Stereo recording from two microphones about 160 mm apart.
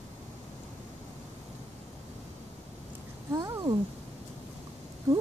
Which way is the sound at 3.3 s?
20° right (ahead or behind).